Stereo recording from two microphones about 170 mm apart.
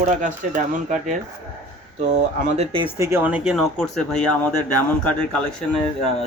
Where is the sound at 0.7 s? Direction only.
45° right (ahead or behind).